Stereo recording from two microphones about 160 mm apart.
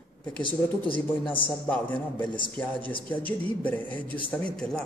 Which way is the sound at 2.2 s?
30° left (ahead or behind).